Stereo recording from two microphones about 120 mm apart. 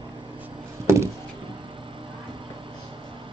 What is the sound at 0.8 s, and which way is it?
Chop, 25° right (ahead or behind).